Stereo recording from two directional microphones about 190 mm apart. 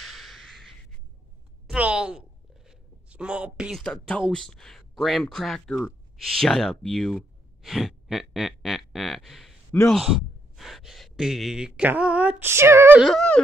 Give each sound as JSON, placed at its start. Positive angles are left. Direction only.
{"t": 0.0, "sound": "a sound", "side_deg": 0}
{"t": 4.3, "sound": "speech", "side_deg": 5}
{"t": 9.7, "sound": "a man's voice", "side_deg": 10}
{"t": 9.9, "sound": "speech", "side_deg": 0}